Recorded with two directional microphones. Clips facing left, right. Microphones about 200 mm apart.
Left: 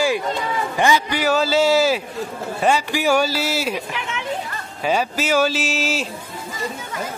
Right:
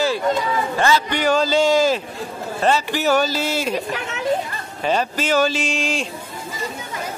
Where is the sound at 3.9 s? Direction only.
40° right (ahead or behind).